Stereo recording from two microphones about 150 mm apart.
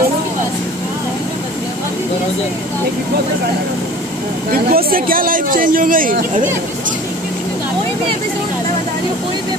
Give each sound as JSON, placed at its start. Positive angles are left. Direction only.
{"t": 4.5, "sound": "speech", "side_deg": -80}